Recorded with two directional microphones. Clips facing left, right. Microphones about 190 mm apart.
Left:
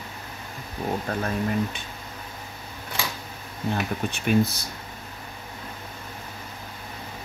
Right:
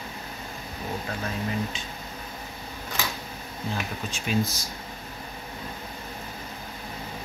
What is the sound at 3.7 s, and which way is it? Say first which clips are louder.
Speech: left 6 dB; 60° left (ahead or behind).